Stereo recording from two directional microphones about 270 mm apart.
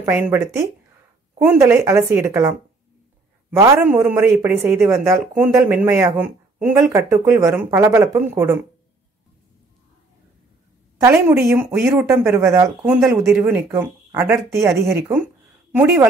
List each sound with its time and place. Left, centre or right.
0.0 s a man's voice: centre
11.0 s a man's voice: centre